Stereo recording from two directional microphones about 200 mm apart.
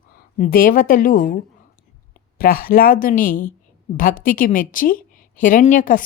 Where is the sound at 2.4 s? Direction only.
45° left (ahead or behind).